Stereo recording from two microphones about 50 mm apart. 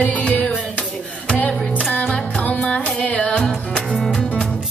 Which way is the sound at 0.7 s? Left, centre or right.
Left.